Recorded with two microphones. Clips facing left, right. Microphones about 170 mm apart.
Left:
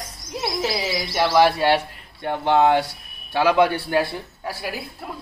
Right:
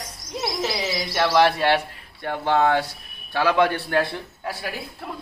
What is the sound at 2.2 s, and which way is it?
Speech, 20° left (ahead or behind).